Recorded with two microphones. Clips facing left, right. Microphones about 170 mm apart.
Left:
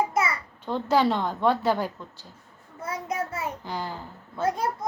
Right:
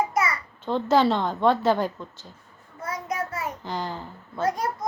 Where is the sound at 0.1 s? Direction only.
25° left (ahead or behind).